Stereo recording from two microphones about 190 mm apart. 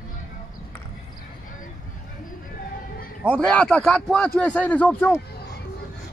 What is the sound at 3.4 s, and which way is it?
A man's voice, 5° left (ahead or behind).